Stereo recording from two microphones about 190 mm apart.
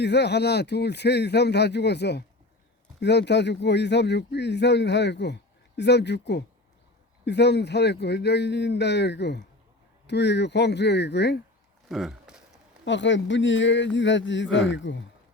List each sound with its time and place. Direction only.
0.0 s speech: 65° left (ahead or behind)
11.9 s a sound: centre (ahead or behind)
12.8 s speech: 70° left (ahead or behind)